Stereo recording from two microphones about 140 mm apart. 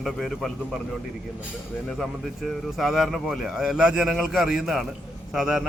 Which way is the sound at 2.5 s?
Centre (ahead or behind).